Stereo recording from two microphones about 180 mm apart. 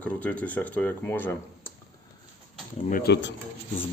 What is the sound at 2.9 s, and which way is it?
Speech, 55° left (ahead or behind).